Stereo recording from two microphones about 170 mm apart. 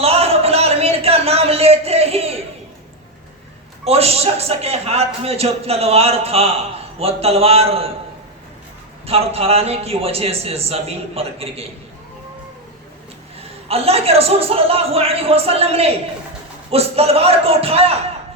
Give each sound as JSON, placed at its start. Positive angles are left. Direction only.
{"t": 0.0, "sound": "a sound", "side_deg": -35}
{"t": 3.8, "sound": "a man's voice", "side_deg": -35}
{"t": 9.0, "sound": "a man's voice", "side_deg": -35}
{"t": 13.7, "sound": "a man's voice", "side_deg": -35}